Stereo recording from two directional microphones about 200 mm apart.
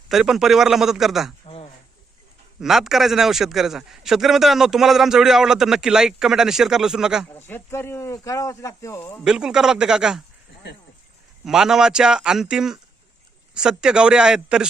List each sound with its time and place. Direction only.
0.1 s a man's voice: centre (ahead or behind)
1.5 s a sound: 30° left (ahead or behind)
2.6 s a man's voice: centre (ahead or behind)
7.3 s speech: 10° left (ahead or behind)
9.2 s a man's voice: 5° right (ahead or behind)
11.4 s a man's voice: 5° right (ahead or behind)